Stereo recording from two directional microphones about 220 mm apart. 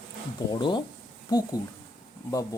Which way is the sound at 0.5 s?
20° left (ahead or behind).